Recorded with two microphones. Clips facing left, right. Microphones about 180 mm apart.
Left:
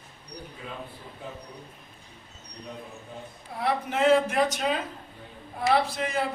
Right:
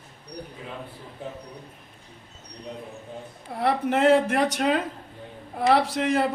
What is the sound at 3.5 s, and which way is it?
A man's voice, 65° right (ahead or behind).